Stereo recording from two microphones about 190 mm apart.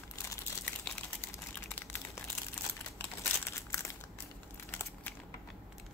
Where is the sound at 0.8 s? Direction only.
10° left (ahead or behind).